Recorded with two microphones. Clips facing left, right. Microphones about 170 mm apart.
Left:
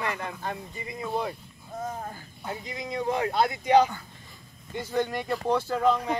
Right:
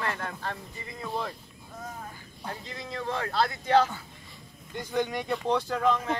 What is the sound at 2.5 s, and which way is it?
Speech, 15° left (ahead or behind).